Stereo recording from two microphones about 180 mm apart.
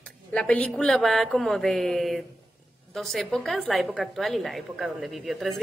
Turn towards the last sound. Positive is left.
turn(degrees=0)  # may be behind; listen again after turning